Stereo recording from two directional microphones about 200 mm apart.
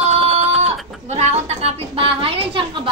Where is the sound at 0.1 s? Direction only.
30° right (ahead or behind).